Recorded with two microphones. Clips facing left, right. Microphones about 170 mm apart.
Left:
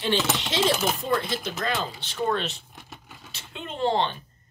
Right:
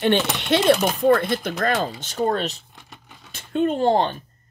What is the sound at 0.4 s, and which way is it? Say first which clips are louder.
Speech: right 7 dB; 60° right (ahead or behind).